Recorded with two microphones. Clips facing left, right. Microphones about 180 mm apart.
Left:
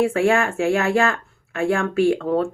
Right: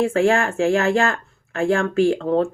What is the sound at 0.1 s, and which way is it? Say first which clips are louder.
Speech: right 1 dB; 30° right (ahead or behind).